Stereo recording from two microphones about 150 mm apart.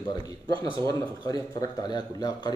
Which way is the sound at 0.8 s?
25° left (ahead or behind).